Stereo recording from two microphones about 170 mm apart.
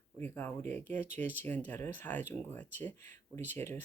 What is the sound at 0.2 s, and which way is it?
Speech, 10° left (ahead or behind).